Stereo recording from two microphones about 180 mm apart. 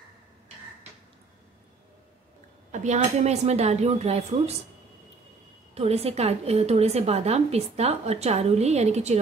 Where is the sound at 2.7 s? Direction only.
40° right (ahead or behind).